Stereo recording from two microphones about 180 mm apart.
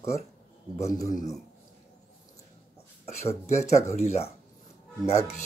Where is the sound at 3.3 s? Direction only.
40° left (ahead or behind).